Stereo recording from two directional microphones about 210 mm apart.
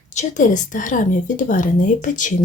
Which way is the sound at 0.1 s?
35° left (ahead or behind).